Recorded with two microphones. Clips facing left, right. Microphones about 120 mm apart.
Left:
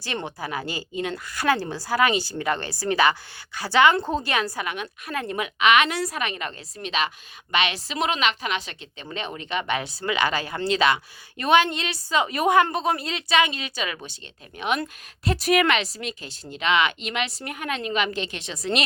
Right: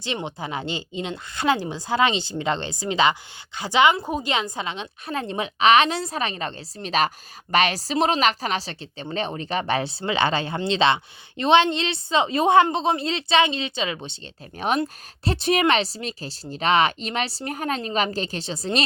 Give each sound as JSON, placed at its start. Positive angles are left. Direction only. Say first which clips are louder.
{"t": 0.0, "sound": "a woman's voice", "louder": "right 1 dB", "side_deg": -20}